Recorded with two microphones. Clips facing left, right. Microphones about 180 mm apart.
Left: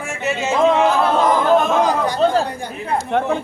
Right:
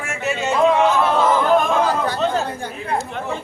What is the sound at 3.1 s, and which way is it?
Speech, 60° left (ahead or behind).